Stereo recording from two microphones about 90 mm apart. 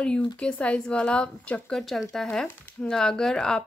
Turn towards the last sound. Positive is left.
turn(degrees=5)  # may be behind; listen again after turning